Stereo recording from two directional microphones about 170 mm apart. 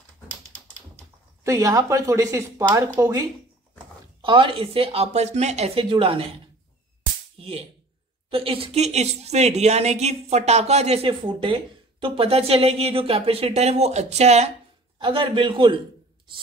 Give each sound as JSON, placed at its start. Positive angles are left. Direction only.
{"t": 1.4, "sound": "a woman's voice", "side_deg": -20}
{"t": 7.3, "sound": "a woman's voice", "side_deg": -35}
{"t": 15.0, "sound": "speech", "side_deg": -30}